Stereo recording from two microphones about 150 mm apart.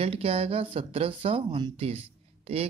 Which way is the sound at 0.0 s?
40° right (ahead or behind).